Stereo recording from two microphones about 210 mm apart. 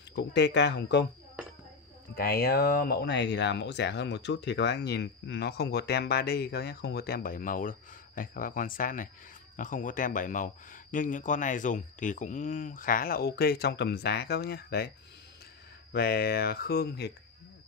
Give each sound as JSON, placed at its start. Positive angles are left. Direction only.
{"t": 0.1, "sound": "speech", "side_deg": 55}
{"t": 2.1, "sound": "speech", "side_deg": 45}
{"t": 15.9, "sound": "speech", "side_deg": 45}